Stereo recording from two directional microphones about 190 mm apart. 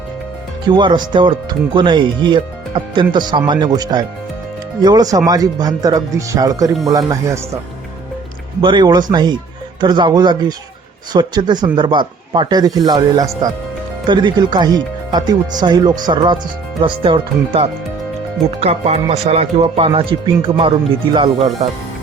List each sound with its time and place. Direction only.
0.7 s speech: 25° right (ahead or behind)
8.6 s speech: 25° right (ahead or behind)